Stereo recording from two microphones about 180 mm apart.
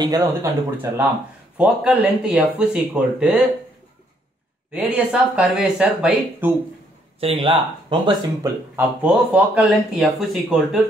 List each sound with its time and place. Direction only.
0.0 s speech: 20° right (ahead or behind)
1.6 s speech: 5° right (ahead or behind)
4.7 s speech: 5° right (ahead or behind)
7.2 s speech: 35° right (ahead or behind)
8.7 s speech: 5° right (ahead or behind)